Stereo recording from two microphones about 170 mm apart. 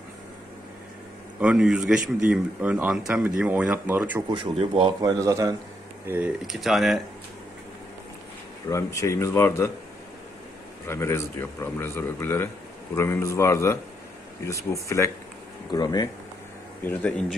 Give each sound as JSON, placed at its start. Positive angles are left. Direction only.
{"t": 1.4, "sound": "speech", "side_deg": -5}
{"t": 4.3, "sound": "speech", "side_deg": -30}
{"t": 8.6, "sound": "a man's voice", "side_deg": 20}
{"t": 10.9, "sound": "a man's voice", "side_deg": 15}
{"t": 16.8, "sound": "a man's voice", "side_deg": 10}